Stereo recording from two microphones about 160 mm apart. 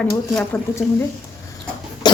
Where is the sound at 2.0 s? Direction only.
25° left (ahead or behind).